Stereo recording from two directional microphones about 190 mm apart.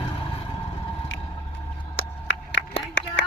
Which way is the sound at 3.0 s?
75° left (ahead or behind).